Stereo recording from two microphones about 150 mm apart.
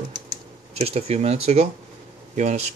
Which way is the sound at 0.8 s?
45° right (ahead or behind).